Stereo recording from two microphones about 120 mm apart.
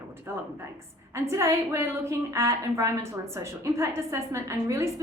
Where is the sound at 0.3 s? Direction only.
25° right (ahead or behind).